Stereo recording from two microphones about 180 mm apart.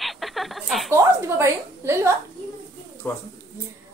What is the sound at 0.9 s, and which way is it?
A woman's voice, 15° right (ahead or behind).